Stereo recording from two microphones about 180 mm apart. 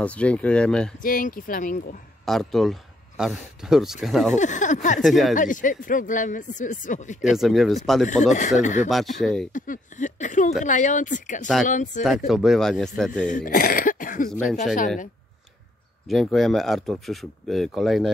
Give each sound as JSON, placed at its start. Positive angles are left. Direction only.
{"t": 0.0, "sound": "speech", "side_deg": 5}
{"t": 1.0, "sound": "speech", "side_deg": 50}
{"t": 2.2, "sound": "speech", "side_deg": 0}
{"t": 4.4, "sound": "speech", "side_deg": 45}
{"t": 5.0, "sound": "speech", "side_deg": 0}
{"t": 5.3, "sound": "speech", "side_deg": 45}
{"t": 7.3, "sound": "speech", "side_deg": 0}
{"t": 8.1, "sound": "speech", "side_deg": 45}
{"t": 9.2, "sound": "speech", "side_deg": 0}
{"t": 9.5, "sound": "speech", "side_deg": 45}
{"t": 12.3, "sound": "speech", "side_deg": 0}
{"t": 13.3, "sound": "speech", "side_deg": 50}
{"t": 16.1, "sound": "speech", "side_deg": 0}